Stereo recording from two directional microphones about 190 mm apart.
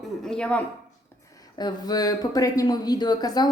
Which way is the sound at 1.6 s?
20° left (ahead or behind).